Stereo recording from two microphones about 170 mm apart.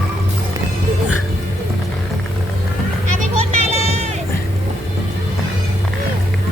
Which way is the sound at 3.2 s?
40° right (ahead or behind).